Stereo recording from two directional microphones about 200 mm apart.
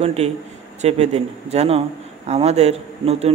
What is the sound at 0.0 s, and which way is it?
A man's voice, 30° right (ahead or behind).